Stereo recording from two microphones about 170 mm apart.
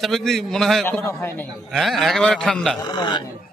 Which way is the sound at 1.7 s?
Centre (ahead or behind).